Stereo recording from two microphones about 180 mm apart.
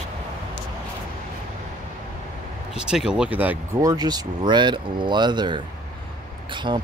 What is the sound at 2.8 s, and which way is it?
Speech, 5° right (ahead or behind).